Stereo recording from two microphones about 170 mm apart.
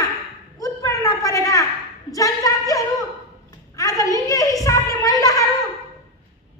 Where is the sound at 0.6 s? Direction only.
20° left (ahead or behind).